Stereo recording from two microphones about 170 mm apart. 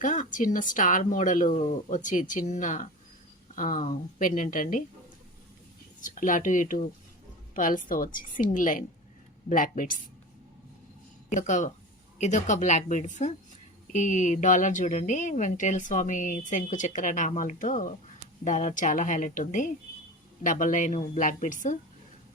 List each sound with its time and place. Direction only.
0.0 s speech: 50° left (ahead or behind)
6.0 s speech: 50° left (ahead or behind)
11.3 s speech: 45° left (ahead or behind)